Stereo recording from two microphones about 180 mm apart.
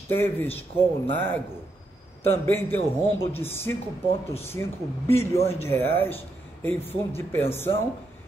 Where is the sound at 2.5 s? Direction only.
10° left (ahead or behind).